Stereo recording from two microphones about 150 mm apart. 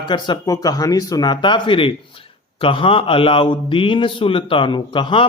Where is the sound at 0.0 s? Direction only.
30° left (ahead or behind).